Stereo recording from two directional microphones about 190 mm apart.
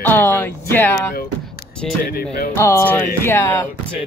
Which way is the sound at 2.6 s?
15° left (ahead or behind).